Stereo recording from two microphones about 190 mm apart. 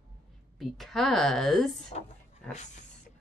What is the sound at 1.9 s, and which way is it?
Speech, 35° left (ahead or behind).